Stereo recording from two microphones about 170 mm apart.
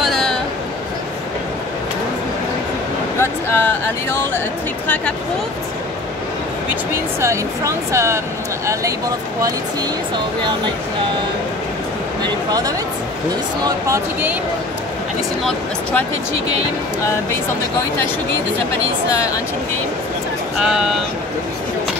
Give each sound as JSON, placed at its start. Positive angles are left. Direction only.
{"t": 0.0, "sound": "a sound", "side_deg": 0}
{"t": 3.2, "sound": "speech", "side_deg": 15}
{"t": 7.2, "sound": "speech", "side_deg": -15}
{"t": 12.2, "sound": "speech", "side_deg": -20}
{"t": 15.4, "sound": "speech", "side_deg": 10}
{"t": 20.6, "sound": "speech", "side_deg": -5}